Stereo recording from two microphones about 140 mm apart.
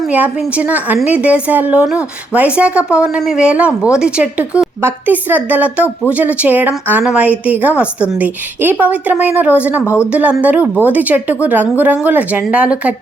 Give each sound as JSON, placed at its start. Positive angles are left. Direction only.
{"t": 0.1, "sound": "a woman's voice", "side_deg": -10}
{"t": 9.8, "sound": "speech", "side_deg": 20}
{"t": 10.1, "sound": "a woman's voice", "side_deg": -10}